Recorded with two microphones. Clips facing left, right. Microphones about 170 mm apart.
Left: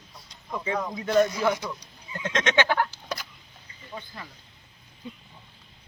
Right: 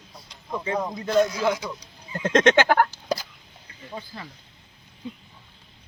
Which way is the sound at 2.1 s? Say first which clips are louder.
Right 7 dB; 45° right (ahead or behind).